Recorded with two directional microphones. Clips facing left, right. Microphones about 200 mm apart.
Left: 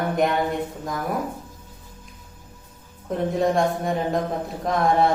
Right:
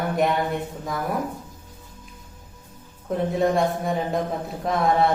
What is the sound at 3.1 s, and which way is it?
Speech, centre (ahead or behind).